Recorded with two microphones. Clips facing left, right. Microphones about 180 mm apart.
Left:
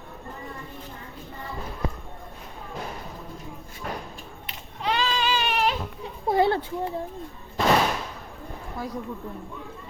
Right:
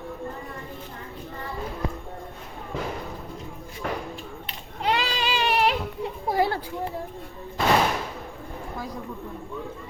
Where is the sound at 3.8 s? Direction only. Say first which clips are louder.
Right 4 dB; 90° right.